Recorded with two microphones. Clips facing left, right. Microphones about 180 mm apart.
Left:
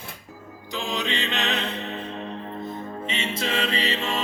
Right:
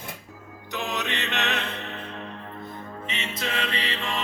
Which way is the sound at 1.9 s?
20° left (ahead or behind).